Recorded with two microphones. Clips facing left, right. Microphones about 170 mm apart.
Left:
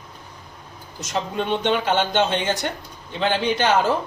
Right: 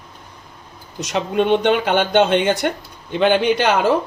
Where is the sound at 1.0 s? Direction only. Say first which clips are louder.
Right 7 dB; 65° right (ahead or behind).